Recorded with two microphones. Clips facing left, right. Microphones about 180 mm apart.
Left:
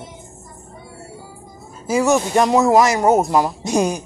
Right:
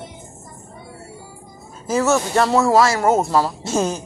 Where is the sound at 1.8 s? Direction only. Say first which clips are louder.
Left 2 dB; 15° left (ahead or behind).